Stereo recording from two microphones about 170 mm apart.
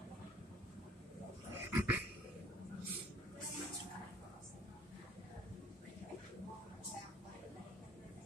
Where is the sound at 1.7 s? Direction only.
15° right (ahead or behind).